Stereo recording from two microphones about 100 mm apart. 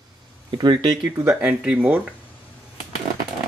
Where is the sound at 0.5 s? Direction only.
45° right (ahead or behind); by 1.3 s 30° right (ahead or behind).